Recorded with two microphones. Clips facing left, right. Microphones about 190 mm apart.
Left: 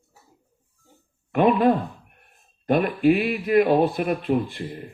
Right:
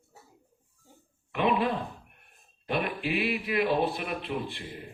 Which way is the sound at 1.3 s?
45° left (ahead or behind).